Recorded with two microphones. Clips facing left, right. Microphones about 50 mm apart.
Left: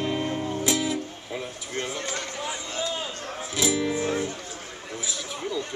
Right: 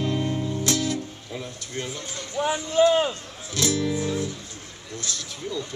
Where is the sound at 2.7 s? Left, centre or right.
Right.